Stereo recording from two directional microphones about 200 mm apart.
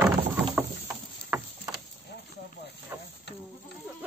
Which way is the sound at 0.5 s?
10° right (ahead or behind).